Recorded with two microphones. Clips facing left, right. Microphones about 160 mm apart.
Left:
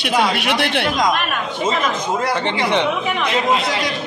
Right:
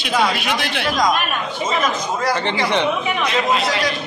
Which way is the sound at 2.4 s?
20° left (ahead or behind).